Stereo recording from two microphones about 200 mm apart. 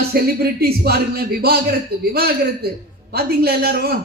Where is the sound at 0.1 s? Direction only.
50° right (ahead or behind).